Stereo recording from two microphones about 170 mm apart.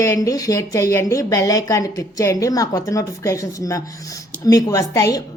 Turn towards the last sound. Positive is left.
turn(degrees=20)  # may be behind; listen again after turning